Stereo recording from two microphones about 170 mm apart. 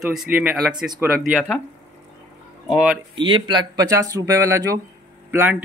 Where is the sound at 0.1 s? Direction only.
5° right (ahead or behind).